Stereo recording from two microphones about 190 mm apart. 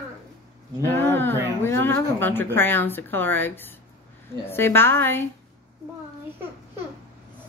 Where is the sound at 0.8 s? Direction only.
10° left (ahead or behind).